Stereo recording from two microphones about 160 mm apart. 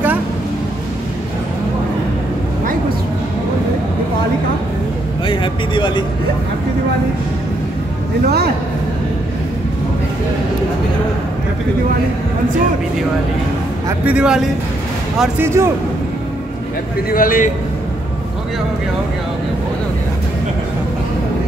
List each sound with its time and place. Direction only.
5.2 s a sound: 30° left (ahead or behind)
14.0 s a man's voice: 5° right (ahead or behind)
17.1 s a man's voice: 60° left (ahead or behind)